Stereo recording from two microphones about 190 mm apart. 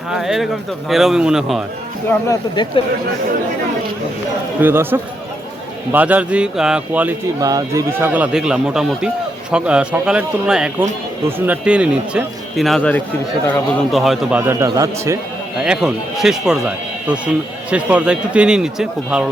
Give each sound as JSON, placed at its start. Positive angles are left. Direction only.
{"t": 0.1, "sound": "a man's voice", "side_deg": 0}
{"t": 2.0, "sound": "speech", "side_deg": 15}
{"t": 4.6, "sound": "speech", "side_deg": -10}
{"t": 7.3, "sound": "a man's voice", "side_deg": -20}
{"t": 15.6, "sound": "a man's voice", "side_deg": -5}